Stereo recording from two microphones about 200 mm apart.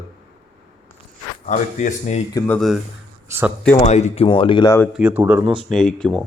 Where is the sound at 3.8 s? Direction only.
35° left (ahead or behind); by 4.9 s 15° left (ahead or behind).